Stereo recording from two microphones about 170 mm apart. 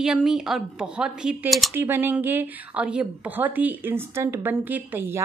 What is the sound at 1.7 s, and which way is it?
A woman's voice, 10° right (ahead or behind).